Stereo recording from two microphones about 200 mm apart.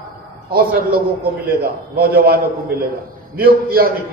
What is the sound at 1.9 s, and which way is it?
Speech, 50° right (ahead or behind).